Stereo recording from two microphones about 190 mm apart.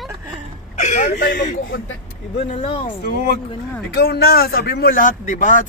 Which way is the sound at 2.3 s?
35° left (ahead or behind).